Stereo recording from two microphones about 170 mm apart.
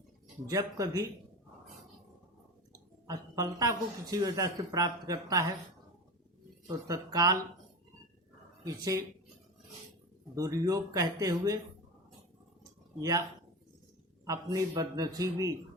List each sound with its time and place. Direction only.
0.4 s speech: 20° right (ahead or behind)
3.1 s speech: 20° right (ahead or behind)
6.7 s speech: 20° right (ahead or behind)
8.6 s speech: 20° right (ahead or behind)
10.3 s speech: 20° right (ahead or behind)
13.0 s speech: 20° right (ahead or behind)
14.3 s speech: 20° right (ahead or behind)